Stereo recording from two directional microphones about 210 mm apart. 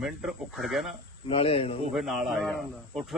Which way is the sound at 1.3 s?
25° left (ahead or behind).